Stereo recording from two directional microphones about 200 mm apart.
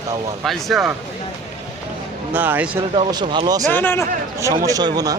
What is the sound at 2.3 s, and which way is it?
Speech, 10° right (ahead or behind).